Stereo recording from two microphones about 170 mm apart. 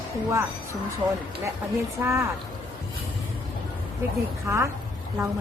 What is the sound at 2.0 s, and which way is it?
Speech, 15° right (ahead or behind).